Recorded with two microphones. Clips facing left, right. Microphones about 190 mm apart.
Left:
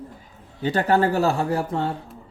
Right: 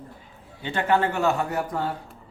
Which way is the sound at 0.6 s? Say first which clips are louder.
Left 3 dB; 40° left (ahead or behind).